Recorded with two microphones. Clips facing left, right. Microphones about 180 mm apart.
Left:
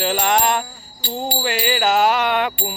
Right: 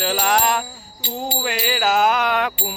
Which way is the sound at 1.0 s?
20° right (ahead or behind).